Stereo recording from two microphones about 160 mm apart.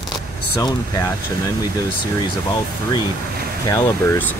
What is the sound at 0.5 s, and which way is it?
Speech, 25° left (ahead or behind).